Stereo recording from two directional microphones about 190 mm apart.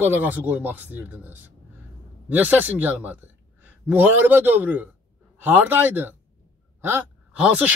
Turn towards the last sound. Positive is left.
turn(degrees=-5)  # may be behind; listen again after turning